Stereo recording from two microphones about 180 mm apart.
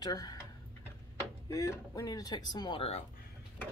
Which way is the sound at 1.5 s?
20° left (ahead or behind).